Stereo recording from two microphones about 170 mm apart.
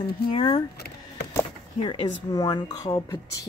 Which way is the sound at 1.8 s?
30° left (ahead or behind).